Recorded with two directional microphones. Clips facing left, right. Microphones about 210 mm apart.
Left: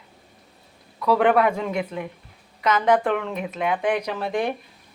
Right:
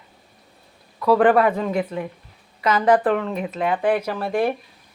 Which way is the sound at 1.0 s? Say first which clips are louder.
Right 3 dB; centre (ahead or behind).